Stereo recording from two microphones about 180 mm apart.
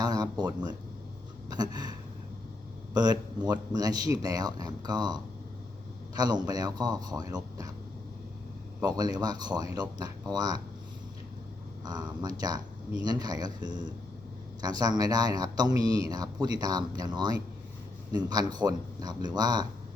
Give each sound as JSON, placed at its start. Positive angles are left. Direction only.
{"t": 0.0, "sound": "speech", "side_deg": -20}
{"t": 8.8, "sound": "speech", "side_deg": -20}
{"t": 11.9, "sound": "speech", "side_deg": -25}